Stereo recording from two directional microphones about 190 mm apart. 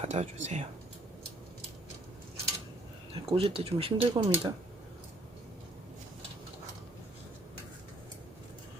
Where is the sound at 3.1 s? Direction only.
30° right (ahead or behind).